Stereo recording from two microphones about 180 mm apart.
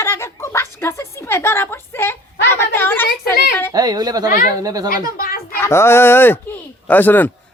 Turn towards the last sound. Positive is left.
turn(degrees=10)  # may be behind; listen again after turning